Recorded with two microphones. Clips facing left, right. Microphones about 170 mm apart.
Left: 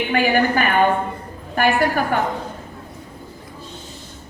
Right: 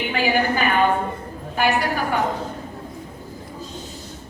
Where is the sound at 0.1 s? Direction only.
55° left (ahead or behind).